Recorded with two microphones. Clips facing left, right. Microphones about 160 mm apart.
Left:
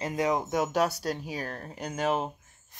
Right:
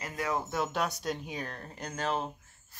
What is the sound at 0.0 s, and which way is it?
Speech, 20° left (ahead or behind).